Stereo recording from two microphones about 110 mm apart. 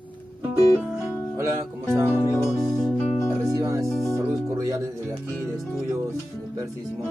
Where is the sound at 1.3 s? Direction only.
30° right (ahead or behind).